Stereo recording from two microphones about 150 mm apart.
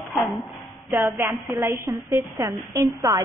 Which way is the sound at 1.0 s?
15° right (ahead or behind).